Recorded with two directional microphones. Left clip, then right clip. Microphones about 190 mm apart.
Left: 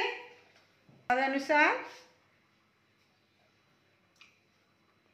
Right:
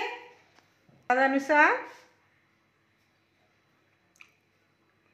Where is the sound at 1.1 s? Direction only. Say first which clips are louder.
Right 4 dB; 55° right (ahead or behind).